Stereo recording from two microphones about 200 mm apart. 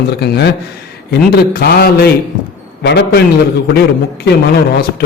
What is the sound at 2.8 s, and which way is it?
Speech, 65° left (ahead or behind).